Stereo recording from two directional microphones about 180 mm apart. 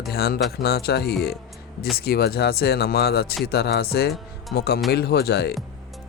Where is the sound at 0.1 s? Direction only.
60° left (ahead or behind).